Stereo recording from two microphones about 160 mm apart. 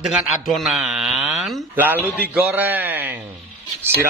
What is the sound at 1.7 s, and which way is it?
Speech, 10° right (ahead or behind).